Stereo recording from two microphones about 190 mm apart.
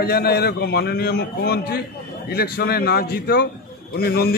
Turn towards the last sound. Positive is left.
turn(degrees=55)  # may be behind; listen again after turning